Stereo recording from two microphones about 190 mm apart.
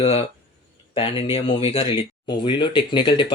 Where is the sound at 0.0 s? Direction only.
30° left (ahead or behind).